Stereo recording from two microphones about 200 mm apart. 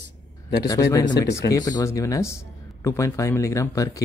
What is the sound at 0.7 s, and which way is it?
Speech, 15° left (ahead or behind).